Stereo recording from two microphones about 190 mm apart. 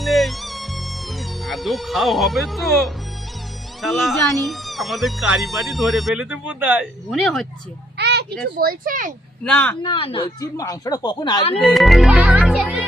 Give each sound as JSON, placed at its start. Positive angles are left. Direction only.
{"t": 0.0, "sound": "music", "side_deg": 0}
{"t": 3.8, "sound": "speech", "side_deg": 0}
{"t": 7.2, "sound": "speech", "side_deg": 0}
{"t": 7.9, "sound": "a sound", "side_deg": -60}
{"t": 8.5, "sound": "speech", "side_deg": -50}
{"t": 9.4, "sound": "speech", "side_deg": 5}
{"t": 9.8, "sound": "speech", "side_deg": 25}
{"t": 11.6, "sound": "music", "side_deg": 0}